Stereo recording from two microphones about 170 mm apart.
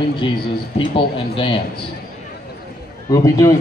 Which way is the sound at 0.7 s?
30° left (ahead or behind).